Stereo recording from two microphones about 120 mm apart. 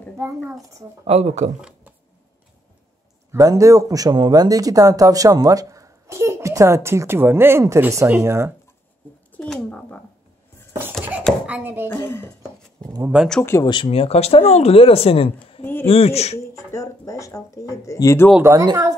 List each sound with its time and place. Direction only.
1.0 s speech: 65° right (ahead or behind)
3.3 s speech: 25° right (ahead or behind)
9.3 s a sound: 10° left (ahead or behind)
11.4 s speech: 15° right (ahead or behind)
11.9 s speech: 20° left (ahead or behind)
13.4 s speech: 20° left (ahead or behind)
13.8 s speech: 55° left (ahead or behind)
16.3 s speech: 25° left (ahead or behind)
18.4 s speech: 25° right (ahead or behind)